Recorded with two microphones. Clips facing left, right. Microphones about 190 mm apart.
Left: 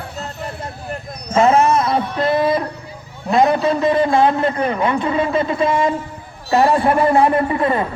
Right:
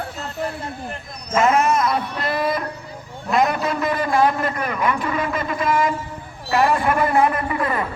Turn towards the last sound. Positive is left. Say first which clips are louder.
# left 6 dB
turn(degrees=25)  # may be behind; listen again after turning